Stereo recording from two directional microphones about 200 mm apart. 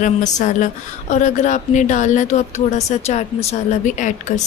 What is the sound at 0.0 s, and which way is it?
A woman's voice, 40° left (ahead or behind).